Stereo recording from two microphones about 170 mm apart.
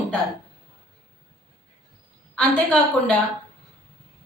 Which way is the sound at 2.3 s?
5° left (ahead or behind).